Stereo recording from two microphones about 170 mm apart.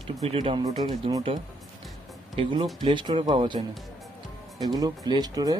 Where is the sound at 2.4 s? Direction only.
30° right (ahead or behind).